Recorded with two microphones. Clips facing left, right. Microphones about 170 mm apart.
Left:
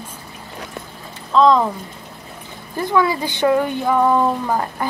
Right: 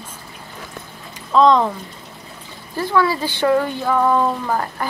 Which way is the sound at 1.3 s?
Centre (ahead or behind).